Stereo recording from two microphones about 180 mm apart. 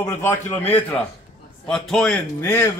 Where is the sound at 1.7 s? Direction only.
5° left (ahead or behind).